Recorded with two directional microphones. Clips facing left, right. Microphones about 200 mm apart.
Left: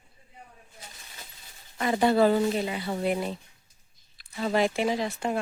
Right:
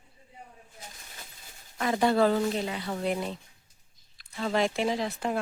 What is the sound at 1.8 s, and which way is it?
Speech, 5° left (ahead or behind).